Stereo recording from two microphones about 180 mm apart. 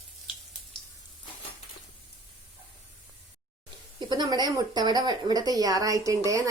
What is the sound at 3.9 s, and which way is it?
Speech, 25° right (ahead or behind).